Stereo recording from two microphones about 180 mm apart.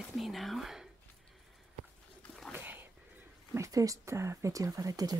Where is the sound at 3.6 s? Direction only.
20° right (ahead or behind).